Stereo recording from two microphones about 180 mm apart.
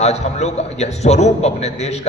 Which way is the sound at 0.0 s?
40° left (ahead or behind).